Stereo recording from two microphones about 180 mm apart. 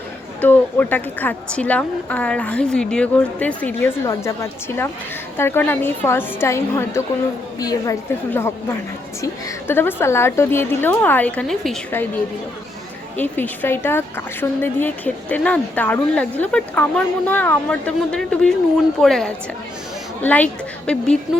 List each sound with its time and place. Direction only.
0.4 s speech: 10° left (ahead or behind)
13.1 s a woman's voice: 10° left (ahead or behind)